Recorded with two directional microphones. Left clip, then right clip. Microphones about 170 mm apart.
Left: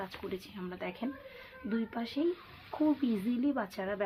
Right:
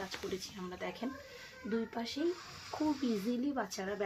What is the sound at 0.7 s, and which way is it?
Speech, 35° left (ahead or behind).